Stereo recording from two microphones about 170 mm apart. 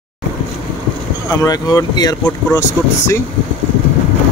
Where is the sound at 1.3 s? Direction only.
20° left (ahead or behind).